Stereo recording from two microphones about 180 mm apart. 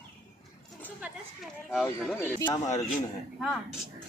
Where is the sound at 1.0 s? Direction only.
Centre (ahead or behind).